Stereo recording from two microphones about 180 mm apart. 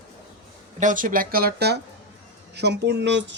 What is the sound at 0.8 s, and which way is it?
Speech, 45° right (ahead or behind).